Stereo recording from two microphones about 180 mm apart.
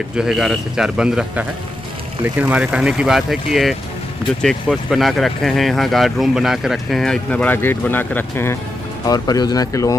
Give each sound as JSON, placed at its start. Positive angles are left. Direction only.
{"t": 0.1, "sound": "speech", "side_deg": 0}
{"t": 2.4, "sound": "speech", "side_deg": -10}